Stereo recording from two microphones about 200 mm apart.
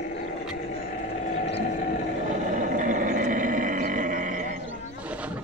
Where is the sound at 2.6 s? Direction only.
40° right (ahead or behind).